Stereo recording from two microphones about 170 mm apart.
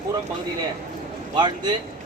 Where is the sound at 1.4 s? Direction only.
25° right (ahead or behind).